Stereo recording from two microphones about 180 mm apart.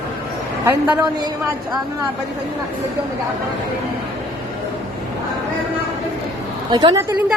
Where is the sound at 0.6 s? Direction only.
15° right (ahead or behind).